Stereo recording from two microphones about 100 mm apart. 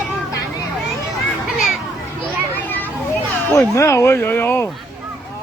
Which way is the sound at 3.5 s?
30° left (ahead or behind).